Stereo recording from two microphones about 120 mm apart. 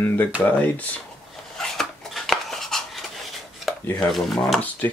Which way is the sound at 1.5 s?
5° left (ahead or behind).